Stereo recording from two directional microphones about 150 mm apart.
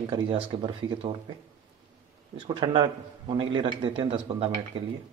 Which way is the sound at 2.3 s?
35° right (ahead or behind).